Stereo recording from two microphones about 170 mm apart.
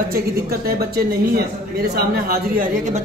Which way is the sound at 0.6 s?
60° right (ahead or behind).